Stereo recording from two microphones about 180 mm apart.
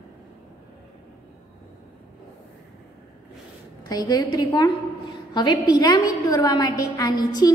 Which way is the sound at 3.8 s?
20° left (ahead or behind).